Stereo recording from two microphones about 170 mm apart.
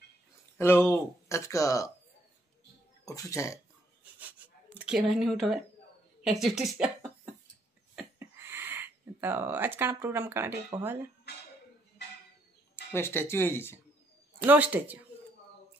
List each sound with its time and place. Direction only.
0.6 s speech: 10° left (ahead or behind)
3.1 s speech: 20° left (ahead or behind)
4.7 s speech: 5° right (ahead or behind)
7.9 s a sound: 10° right (ahead or behind)
11.3 s a sound: 75° left (ahead or behind)
12.9 s speech: 15° left (ahead or behind)
14.4 s speech: 10° right (ahead or behind)